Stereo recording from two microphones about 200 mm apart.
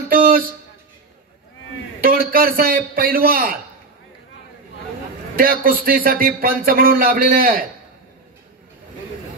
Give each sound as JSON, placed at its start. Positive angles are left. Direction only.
{"t": 2.0, "sound": "a man's voice", "side_deg": -45}
{"t": 5.4, "sound": "a man's voice", "side_deg": -45}